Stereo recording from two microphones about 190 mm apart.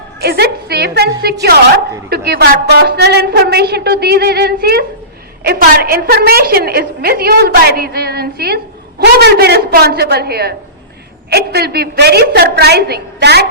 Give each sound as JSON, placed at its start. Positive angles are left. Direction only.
{"t": 0.2, "sound": "a woman's voice", "side_deg": -55}